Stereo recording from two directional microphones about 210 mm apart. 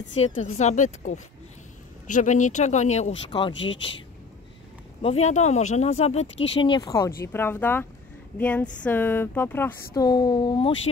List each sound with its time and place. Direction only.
0.4 s speech: 35° left (ahead or behind)
5.0 s speech: 30° left (ahead or behind)
6.3 s speech: 60° left (ahead or behind)
6.6 s a sound: 20° left (ahead or behind)